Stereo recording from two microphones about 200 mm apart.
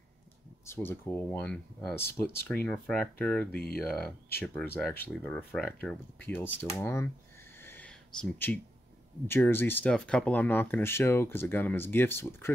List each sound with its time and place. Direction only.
0.7 s speech: 10° left (ahead or behind)
3.5 s speech: 50° left (ahead or behind)
3.8 s speech: 5° left (ahead or behind)
7.5 s a sound: 10° left (ahead or behind)
9.3 s speech: 10° left (ahead or behind)